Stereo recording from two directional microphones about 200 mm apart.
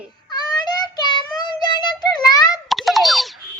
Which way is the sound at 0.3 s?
20° left (ahead or behind).